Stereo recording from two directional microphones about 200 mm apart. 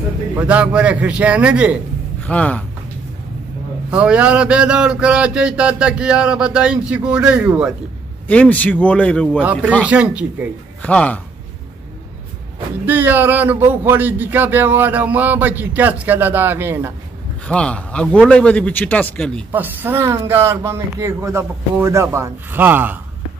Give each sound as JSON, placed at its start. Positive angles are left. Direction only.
{"t": 0.4, "sound": "speech", "side_deg": -5}
{"t": 2.2, "sound": "speech", "side_deg": 5}
{"t": 3.9, "sound": "a sound", "side_deg": -5}
{"t": 8.3, "sound": "speech", "side_deg": 10}
{"t": 9.4, "sound": "speech", "side_deg": -5}
{"t": 10.8, "sound": "speech", "side_deg": 5}
{"t": 12.8, "sound": "speech", "side_deg": -10}
{"t": 17.5, "sound": "a sound", "side_deg": 5}
{"t": 19.5, "sound": "speech", "side_deg": -10}